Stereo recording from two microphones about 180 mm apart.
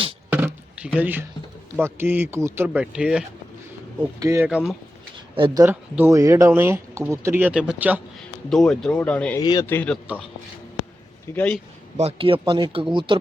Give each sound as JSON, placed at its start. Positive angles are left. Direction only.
{"t": 0.3, "sound": "a sound", "side_deg": -10}
{"t": 1.8, "sound": "speech", "side_deg": -10}
{"t": 4.2, "sound": "speech", "side_deg": -15}
{"t": 4.4, "sound": "speech", "side_deg": -5}
{"t": 5.1, "sound": "a sound", "side_deg": -25}
{"t": 5.6, "sound": "speech", "side_deg": -15}
{"t": 8.4, "sound": "speech", "side_deg": 0}
{"t": 9.4, "sound": "speech", "side_deg": 25}
{"t": 9.6, "sound": "a man's voice", "side_deg": 10}
{"t": 11.3, "sound": "a man's voice", "side_deg": 5}
{"t": 11.9, "sound": "speech", "side_deg": -35}